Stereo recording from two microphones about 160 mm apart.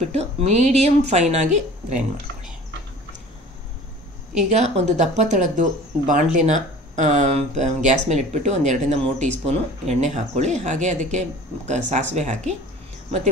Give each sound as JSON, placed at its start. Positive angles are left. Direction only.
{"t": 0.0, "sound": "a woman's voice", "side_deg": -40}
{"t": 4.4, "sound": "speech", "side_deg": -45}